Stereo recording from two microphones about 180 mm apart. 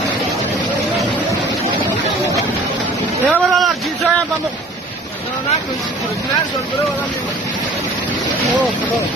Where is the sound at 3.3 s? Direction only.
Centre (ahead or behind).